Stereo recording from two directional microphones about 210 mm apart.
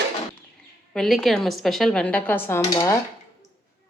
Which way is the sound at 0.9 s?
Centre (ahead or behind).